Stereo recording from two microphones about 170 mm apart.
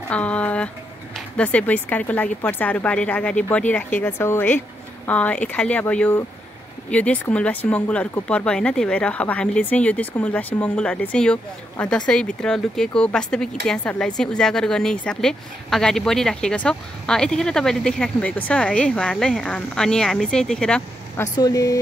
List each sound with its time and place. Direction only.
0.1 s speech: 5° left (ahead or behind)
21.2 s speech: 20° left (ahead or behind)